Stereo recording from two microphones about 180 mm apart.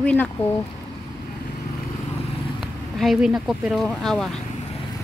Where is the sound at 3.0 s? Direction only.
Centre (ahead or behind).